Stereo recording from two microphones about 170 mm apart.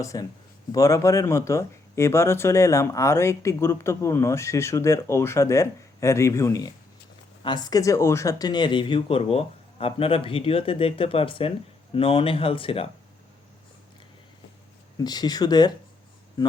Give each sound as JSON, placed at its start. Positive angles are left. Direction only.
{"t": 0.0, "sound": "speech", "side_deg": 20}
{"t": 14.9, "sound": "speech", "side_deg": 25}